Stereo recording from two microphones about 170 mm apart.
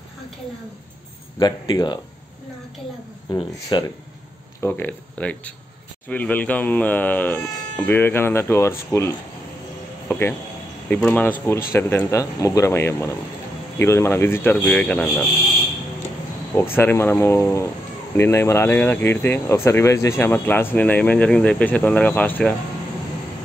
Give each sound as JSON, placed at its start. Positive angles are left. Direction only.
{"t": 1.4, "sound": "speech", "side_deg": 25}
{"t": 3.3, "sound": "speech", "side_deg": 25}
{"t": 4.6, "sound": "speech", "side_deg": 10}
{"t": 10.0, "sound": "cricket", "side_deg": 10}
{"t": 10.9, "sound": "speech", "side_deg": 10}
{"t": 16.5, "sound": "speech", "side_deg": 10}